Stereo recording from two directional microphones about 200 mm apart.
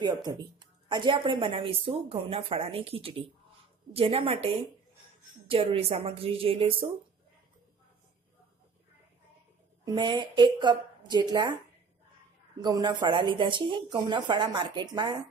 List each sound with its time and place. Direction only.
0.0 s a woman's voice: 20° right (ahead or behind)
5.5 s a woman's voice: 30° right (ahead or behind)
9.8 s a woman's voice: 20° right (ahead or behind)
12.5 s a woman's voice: 20° right (ahead or behind)